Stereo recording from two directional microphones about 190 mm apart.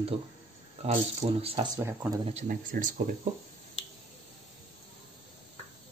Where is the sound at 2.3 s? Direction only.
35° right (ahead or behind).